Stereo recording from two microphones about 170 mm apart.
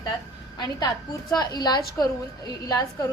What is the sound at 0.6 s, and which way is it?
A woman's voice, 20° left (ahead or behind).